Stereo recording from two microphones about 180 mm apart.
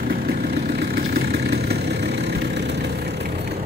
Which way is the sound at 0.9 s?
60° right (ahead or behind).